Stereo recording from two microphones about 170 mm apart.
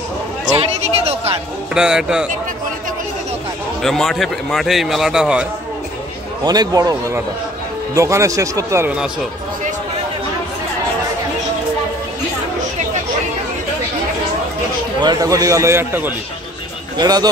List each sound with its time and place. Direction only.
0.6 s a sound: 35° right (ahead or behind)
1.7 s speech: 5° right (ahead or behind)
3.8 s speech: centre (ahead or behind)
6.4 s a man's voice: 25° right (ahead or behind); by 9.1 s 10° right (ahead or behind)
15.0 s a man's voice: 25° right (ahead or behind)
16.9 s a man's voice: 25° right (ahead or behind)